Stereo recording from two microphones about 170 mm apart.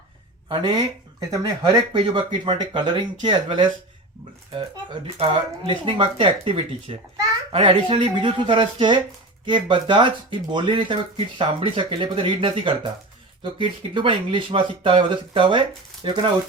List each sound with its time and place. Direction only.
0.4 s speech: 25° right (ahead or behind)